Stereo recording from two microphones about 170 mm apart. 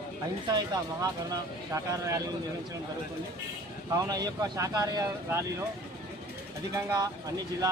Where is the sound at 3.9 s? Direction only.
20° right (ahead or behind).